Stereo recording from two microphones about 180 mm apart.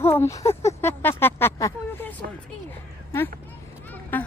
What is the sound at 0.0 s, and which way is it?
A woman's voice, 15° left (ahead or behind).